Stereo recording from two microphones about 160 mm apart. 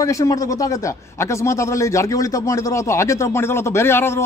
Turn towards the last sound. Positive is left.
turn(degrees=15)  # may be behind; listen again after turning